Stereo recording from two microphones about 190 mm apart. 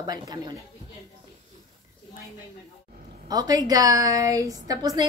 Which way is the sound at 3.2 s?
20° right (ahead or behind).